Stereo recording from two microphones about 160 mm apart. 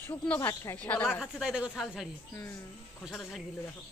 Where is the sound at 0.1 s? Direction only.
10° left (ahead or behind).